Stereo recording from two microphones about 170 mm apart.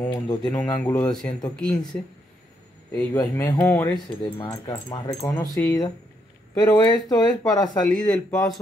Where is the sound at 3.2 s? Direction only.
20° left (ahead or behind).